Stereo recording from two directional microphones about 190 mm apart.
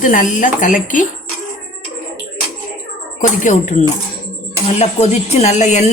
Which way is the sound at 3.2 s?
40° left (ahead or behind).